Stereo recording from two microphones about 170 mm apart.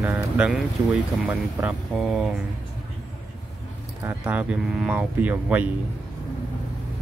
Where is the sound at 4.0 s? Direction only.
10° right (ahead or behind).